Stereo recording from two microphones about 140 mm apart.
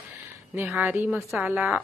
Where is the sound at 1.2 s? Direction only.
Centre (ahead or behind).